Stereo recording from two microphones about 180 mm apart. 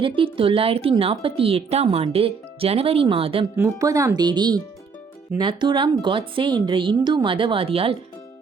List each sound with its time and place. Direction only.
0.0 s a woman's voice: 30° right (ahead or behind)
3.5 s a woman's voice: 15° right (ahead or behind); by 7.9 s 30° right (ahead or behind)